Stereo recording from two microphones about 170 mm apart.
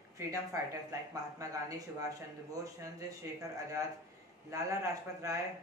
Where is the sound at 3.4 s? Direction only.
20° right (ahead or behind).